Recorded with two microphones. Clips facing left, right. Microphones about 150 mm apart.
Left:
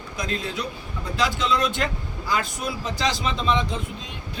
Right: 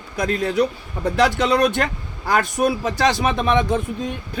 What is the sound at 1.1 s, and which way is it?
Speech, 70° right (ahead or behind).